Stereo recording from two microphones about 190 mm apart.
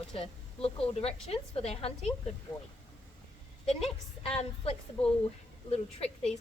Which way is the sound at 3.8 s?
30° left (ahead or behind).